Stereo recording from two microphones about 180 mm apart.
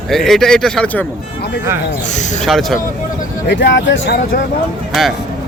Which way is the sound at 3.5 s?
75° left (ahead or behind).